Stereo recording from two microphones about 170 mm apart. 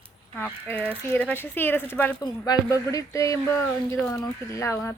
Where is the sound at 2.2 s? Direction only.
25° left (ahead or behind).